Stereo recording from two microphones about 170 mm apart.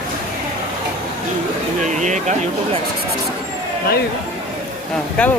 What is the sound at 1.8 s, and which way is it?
Speech, 45° right (ahead or behind).